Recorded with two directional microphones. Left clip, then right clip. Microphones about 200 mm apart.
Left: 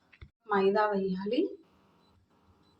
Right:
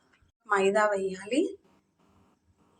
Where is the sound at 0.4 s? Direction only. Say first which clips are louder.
Right 2 dB; 35° right (ahead or behind).